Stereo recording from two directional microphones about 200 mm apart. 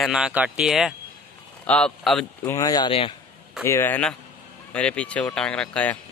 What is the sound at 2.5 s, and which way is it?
Speech, 20° left (ahead or behind).